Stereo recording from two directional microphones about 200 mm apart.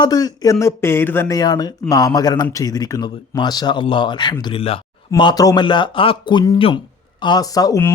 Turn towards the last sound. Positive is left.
turn(degrees=15)  # may be behind; listen again after turning